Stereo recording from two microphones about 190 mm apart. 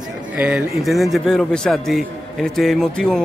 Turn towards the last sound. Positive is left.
turn(degrees=0)  # may be behind; listen again after turning